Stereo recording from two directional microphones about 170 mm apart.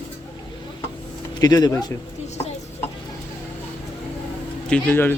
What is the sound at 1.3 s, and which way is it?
Speech, 25° left (ahead or behind).